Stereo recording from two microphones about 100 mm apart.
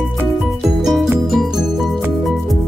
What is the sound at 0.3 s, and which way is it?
Music, centre (ahead or behind).